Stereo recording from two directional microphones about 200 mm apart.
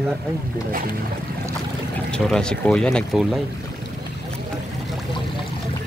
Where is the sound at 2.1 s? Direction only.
5° left (ahead or behind).